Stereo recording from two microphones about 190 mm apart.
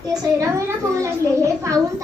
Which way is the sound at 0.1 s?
15° right (ahead or behind).